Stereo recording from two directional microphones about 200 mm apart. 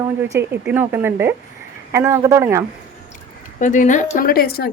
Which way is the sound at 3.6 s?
40° left (ahead or behind).